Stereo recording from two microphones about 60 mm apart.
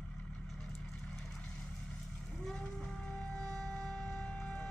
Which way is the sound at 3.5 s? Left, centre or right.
Centre.